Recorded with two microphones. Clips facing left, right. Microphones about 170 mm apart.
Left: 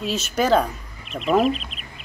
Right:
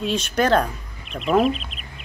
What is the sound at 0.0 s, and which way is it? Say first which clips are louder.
Speech: right 1 dB; 5° left (ahead or behind).